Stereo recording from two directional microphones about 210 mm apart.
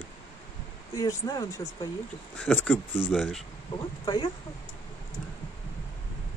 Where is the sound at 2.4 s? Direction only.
Centre (ahead or behind).